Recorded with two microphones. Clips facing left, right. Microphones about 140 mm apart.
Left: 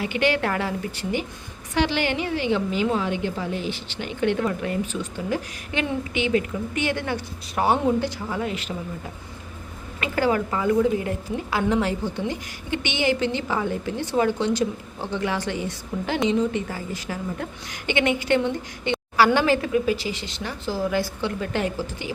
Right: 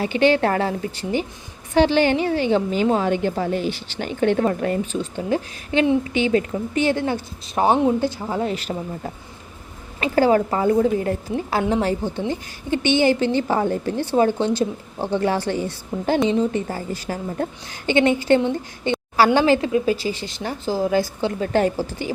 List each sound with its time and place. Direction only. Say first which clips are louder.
0.0 s a woman's voice: right 5 dB; 30° right (ahead or behind)
10.0 s a woman's voice: right 6 dB; 30° right (ahead or behind)
12.0 s speech: right 3 dB; 25° right (ahead or behind)
12.7 s a woman's voice: right 6 dB; 35° right (ahead or behind)